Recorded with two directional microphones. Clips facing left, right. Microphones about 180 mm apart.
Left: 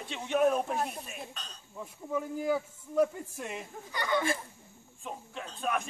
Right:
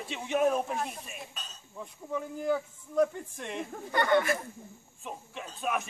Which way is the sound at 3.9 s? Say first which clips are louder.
Right 6 dB; 60° right (ahead or behind).